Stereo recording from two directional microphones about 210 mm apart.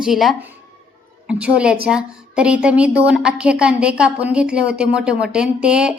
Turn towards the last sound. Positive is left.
turn(degrees=-5)  # may be behind; listen again after turning